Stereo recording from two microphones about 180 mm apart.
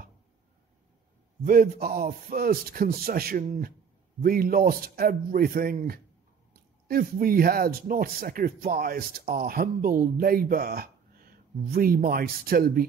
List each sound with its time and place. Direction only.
1.4 s a man's voice: 55° right (ahead or behind)